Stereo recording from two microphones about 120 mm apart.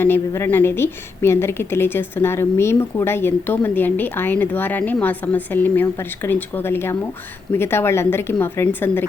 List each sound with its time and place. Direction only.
0.0 s a woman's voice: 20° left (ahead or behind)